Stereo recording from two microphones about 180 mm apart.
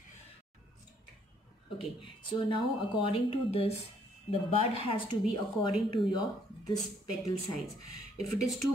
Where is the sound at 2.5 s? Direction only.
30° left (ahead or behind).